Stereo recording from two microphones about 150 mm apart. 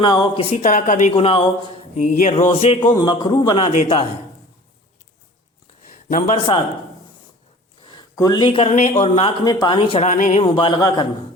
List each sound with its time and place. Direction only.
0.0 s a man's voice: 30° left (ahead or behind)
0.5 s speech: 55° left (ahead or behind)
1.1 s speech: 35° left (ahead or behind)
2.0 s a sound: 55° left (ahead or behind)
2.3 s speech: 40° left (ahead or behind)
2.9 s a man's voice: 25° left (ahead or behind)
5.9 s a sound: 60° left (ahead or behind)
6.3 s speech: 35° left (ahead or behind)
7.9 s speech: 25° left (ahead or behind); by 9.3 s 40° left (ahead or behind)
9.4 s speech: 25° left (ahead or behind)
10.1 s speech: 50° left (ahead or behind); by 11.0 s 25° left (ahead or behind)